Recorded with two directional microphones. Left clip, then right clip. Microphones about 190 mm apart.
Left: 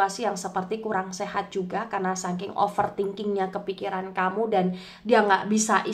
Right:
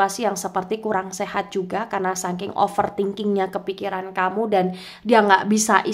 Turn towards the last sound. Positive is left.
turn(degrees=-35)  # may be behind; listen again after turning